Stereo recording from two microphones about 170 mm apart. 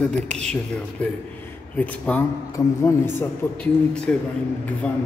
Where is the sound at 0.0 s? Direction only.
5° left (ahead or behind).